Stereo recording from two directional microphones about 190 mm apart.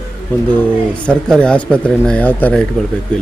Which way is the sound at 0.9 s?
5° left (ahead or behind).